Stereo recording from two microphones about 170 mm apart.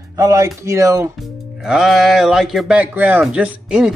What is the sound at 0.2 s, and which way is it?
Speech, 15° right (ahead or behind).